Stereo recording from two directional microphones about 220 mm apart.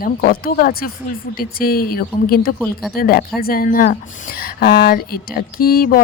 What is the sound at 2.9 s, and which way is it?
Speech, 40° left (ahead or behind).